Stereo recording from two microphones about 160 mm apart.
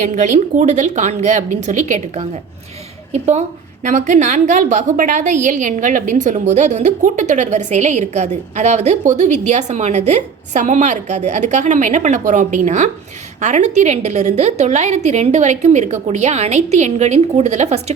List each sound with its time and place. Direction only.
0.0 s a woman's voice: 50° right (ahead or behind)